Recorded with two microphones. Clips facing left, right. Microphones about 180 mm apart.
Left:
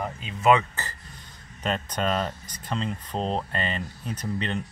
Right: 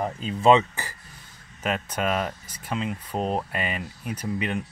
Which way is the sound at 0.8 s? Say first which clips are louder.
Even; 15° right (ahead or behind).